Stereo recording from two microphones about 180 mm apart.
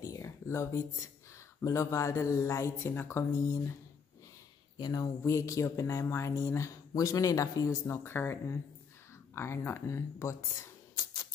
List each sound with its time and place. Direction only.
0.0 s a sound: 15° left (ahead or behind)
1.6 s speech: 15° left (ahead or behind)
4.7 s speech: 20° left (ahead or behind)